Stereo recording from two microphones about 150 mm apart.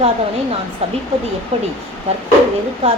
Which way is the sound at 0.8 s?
40° right (ahead or behind).